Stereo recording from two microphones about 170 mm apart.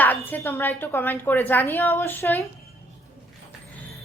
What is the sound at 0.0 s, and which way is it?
A woman's voice, 10° left (ahead or behind).